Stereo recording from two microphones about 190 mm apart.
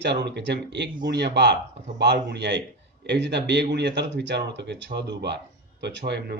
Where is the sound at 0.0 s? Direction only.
65° right (ahead or behind).